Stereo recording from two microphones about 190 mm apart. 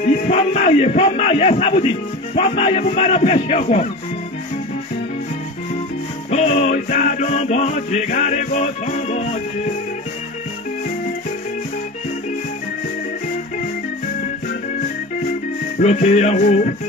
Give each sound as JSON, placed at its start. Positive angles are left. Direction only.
{"t": 0.3, "sound": "a man's voice", "side_deg": 35}
{"t": 6.3, "sound": "a man's voice", "side_deg": 35}
{"t": 15.8, "sound": "a man's voice", "side_deg": 40}